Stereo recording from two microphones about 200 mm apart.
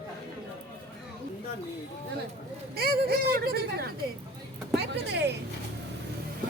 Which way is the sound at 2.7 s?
50° right (ahead or behind).